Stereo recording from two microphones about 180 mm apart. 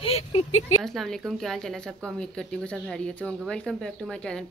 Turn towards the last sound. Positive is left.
turn(degrees=5)  # may be behind; listen again after turning